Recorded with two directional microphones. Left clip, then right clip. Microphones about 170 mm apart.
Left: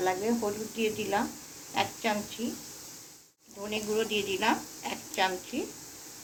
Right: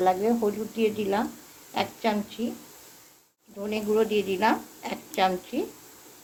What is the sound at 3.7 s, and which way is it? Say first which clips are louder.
Speech: right 6 dB; 70° right (ahead or behind).